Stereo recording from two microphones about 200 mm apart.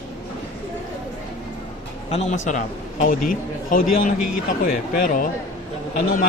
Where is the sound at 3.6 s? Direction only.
45° left (ahead or behind).